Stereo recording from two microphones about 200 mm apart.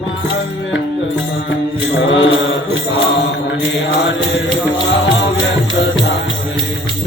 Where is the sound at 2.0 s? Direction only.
70° left (ahead or behind).